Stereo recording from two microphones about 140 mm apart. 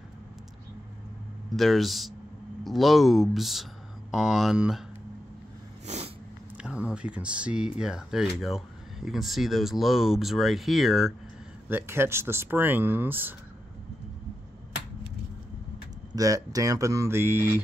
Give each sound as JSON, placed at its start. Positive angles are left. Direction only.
{"t": 1.5, "sound": "speech", "side_deg": 0}
{"t": 5.9, "sound": "cat", "side_deg": -50}
{"t": 6.6, "sound": "speech", "side_deg": -5}
{"t": 11.7, "sound": "speech", "side_deg": -15}
{"t": 16.2, "sound": "speech", "side_deg": -25}